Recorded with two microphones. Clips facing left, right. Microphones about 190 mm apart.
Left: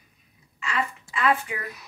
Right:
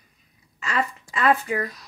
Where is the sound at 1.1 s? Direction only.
40° right (ahead or behind).